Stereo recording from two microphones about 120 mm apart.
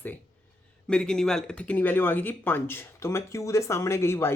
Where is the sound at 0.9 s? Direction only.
5° left (ahead or behind).